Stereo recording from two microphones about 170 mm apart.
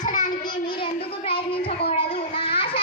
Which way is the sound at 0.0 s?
50° left (ahead or behind).